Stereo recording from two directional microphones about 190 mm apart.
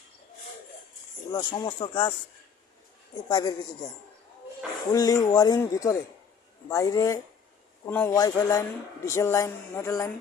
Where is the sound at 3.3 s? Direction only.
20° left (ahead or behind).